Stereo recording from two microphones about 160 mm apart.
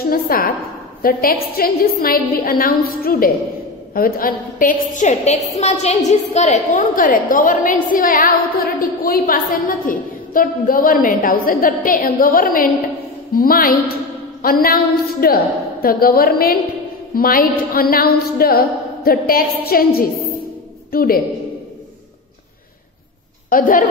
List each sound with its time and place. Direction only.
0.1 s a woman's voice: 65° left (ahead or behind)
23.5 s a woman's voice: 60° left (ahead or behind)